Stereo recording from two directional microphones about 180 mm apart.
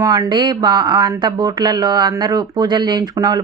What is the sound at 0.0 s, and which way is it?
Speech, 20° right (ahead or behind).